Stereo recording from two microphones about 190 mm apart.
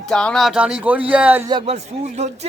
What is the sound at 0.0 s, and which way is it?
Speech, 5° left (ahead or behind).